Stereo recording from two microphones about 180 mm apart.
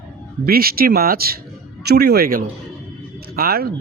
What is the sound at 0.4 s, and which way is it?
Speech, 55° right (ahead or behind).